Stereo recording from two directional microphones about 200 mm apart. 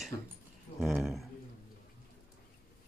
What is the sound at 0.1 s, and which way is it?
Speech, 20° left (ahead or behind).